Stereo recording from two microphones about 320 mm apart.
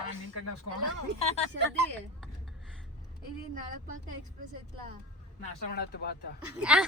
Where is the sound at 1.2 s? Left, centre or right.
Centre.